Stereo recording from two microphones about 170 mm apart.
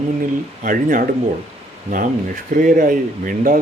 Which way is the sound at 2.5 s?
50° right (ahead or behind).